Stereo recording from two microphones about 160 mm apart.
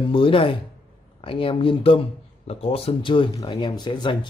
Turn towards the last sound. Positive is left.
turn(degrees=30)  # may be behind; listen again after turning